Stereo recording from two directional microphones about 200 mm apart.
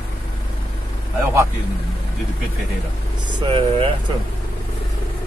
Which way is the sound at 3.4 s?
25° right (ahead or behind).